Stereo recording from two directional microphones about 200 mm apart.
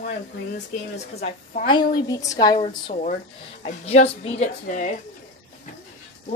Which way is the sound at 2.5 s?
30° left (ahead or behind).